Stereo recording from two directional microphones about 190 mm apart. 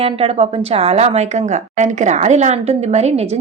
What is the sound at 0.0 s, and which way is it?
A woman's voice, 30° right (ahead or behind).